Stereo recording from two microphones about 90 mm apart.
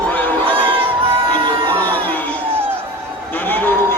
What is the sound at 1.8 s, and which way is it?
Crowd, 20° left (ahead or behind).